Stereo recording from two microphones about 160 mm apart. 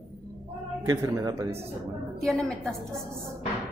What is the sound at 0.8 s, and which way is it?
Speech, 20° right (ahead or behind).